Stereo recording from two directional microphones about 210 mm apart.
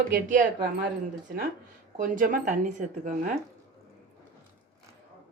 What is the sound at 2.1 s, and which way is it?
Speech, 40° right (ahead or behind).